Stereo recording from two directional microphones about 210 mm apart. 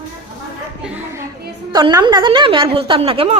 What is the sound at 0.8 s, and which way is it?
Speech, 10° right (ahead or behind).